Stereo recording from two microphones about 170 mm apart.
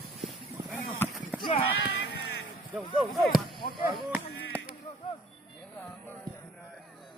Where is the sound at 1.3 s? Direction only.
10° right (ahead or behind).